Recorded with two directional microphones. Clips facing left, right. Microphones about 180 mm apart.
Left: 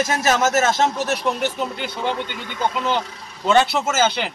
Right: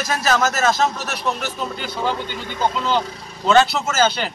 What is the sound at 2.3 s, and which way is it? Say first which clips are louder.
Speech: right 2 dB; 35° right (ahead or behind).